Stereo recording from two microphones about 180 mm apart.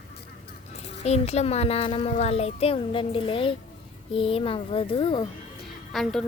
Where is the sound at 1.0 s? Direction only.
35° left (ahead or behind).